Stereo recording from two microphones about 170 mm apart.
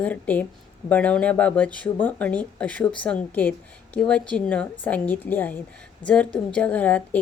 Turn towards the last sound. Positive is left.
turn(degrees=10)  # may be behind; listen again after turning